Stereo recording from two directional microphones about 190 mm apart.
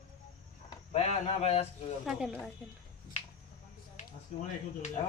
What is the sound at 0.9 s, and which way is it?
Speech, 35° left (ahead or behind).